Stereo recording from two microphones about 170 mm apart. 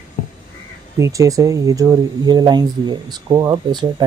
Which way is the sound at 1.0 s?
20° right (ahead or behind).